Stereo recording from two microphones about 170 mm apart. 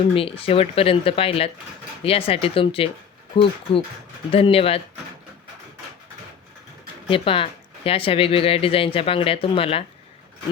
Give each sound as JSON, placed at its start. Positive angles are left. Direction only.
{"t": 0.1, "sound": "speech", "side_deg": 35}
{"t": 7.1, "sound": "speech", "side_deg": 30}